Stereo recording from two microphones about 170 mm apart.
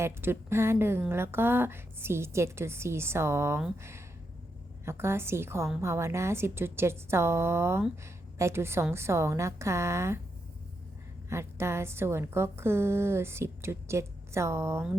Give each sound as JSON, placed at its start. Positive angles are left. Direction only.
{"t": 0.0, "sound": "a woman's voice", "side_deg": -15}
{"t": 11.3, "sound": "a woman's voice", "side_deg": -15}